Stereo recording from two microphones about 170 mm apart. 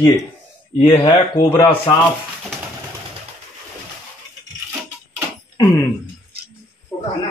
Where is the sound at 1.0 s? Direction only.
20° left (ahead or behind).